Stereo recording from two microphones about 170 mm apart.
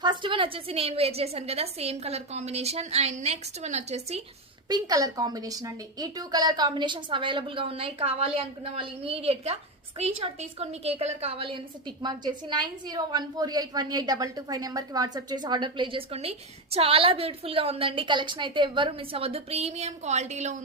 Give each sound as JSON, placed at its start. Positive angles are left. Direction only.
{"t": 0.0, "sound": "a woman's voice", "side_deg": -25}
{"t": 4.7, "sound": "a woman's voice", "side_deg": -20}